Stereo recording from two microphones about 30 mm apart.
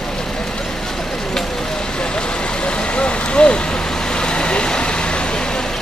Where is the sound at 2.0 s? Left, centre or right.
Left.